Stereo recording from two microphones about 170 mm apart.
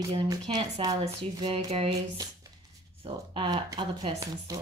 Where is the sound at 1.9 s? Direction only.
20° right (ahead or behind).